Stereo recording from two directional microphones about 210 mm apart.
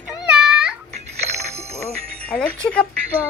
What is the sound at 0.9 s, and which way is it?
Music, 30° right (ahead or behind).